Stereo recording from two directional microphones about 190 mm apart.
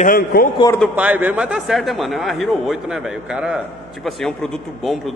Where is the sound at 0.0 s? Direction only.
50° left (ahead or behind).